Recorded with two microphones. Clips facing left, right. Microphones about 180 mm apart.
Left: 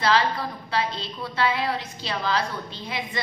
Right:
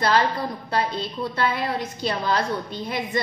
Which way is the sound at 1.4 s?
50° right (ahead or behind).